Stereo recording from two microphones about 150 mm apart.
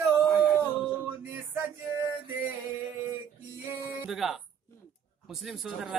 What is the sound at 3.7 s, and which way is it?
Music, 5° right (ahead or behind).